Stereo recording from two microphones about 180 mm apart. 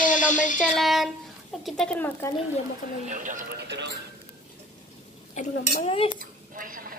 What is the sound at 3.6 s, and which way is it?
Speech, 70° right (ahead or behind).